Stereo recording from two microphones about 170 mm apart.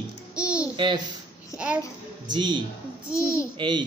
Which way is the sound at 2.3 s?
25° right (ahead or behind).